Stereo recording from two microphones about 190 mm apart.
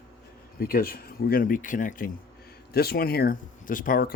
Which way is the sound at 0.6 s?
55° left (ahead or behind).